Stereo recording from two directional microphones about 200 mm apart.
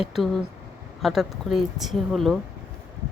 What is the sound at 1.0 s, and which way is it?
A woman's voice, centre (ahead or behind).